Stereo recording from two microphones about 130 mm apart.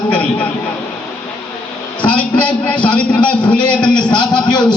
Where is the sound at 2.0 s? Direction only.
10° left (ahead or behind).